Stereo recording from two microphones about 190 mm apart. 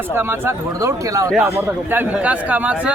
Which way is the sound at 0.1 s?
10° right (ahead or behind).